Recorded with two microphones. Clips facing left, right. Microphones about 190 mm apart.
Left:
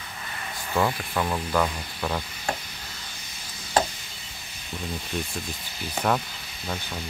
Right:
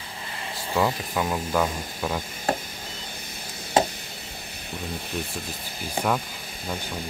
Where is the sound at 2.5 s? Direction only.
35° right (ahead or behind).